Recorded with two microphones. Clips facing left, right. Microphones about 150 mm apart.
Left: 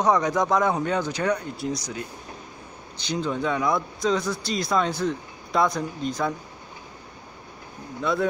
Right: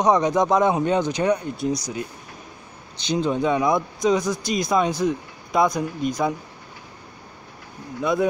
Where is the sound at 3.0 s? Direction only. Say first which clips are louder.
Right 5 dB; 20° right (ahead or behind).